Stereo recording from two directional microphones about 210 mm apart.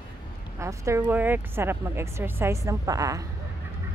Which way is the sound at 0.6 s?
15° right (ahead or behind).